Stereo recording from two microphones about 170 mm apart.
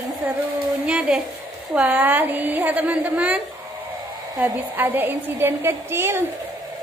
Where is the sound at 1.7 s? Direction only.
10° right (ahead or behind).